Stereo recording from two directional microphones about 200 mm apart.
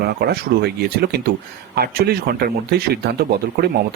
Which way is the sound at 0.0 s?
50° right (ahead or behind).